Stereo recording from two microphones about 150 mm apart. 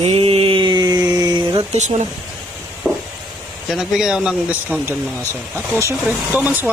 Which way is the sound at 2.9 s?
5° left (ahead or behind).